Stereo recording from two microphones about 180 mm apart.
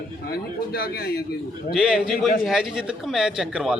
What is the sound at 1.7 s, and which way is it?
Speech, 5° right (ahead or behind).